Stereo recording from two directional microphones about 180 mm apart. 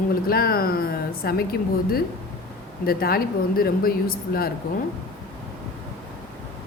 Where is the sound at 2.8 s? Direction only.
55° left (ahead or behind).